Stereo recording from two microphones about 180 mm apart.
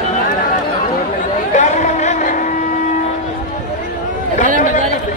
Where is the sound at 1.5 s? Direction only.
45° left (ahead or behind).